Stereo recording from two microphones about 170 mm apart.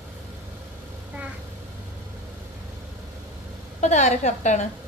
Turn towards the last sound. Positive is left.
turn(degrees=45)  # may be behind; listen again after turning